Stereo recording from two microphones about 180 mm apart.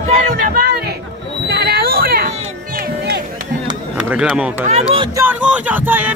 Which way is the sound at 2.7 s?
60° right (ahead or behind).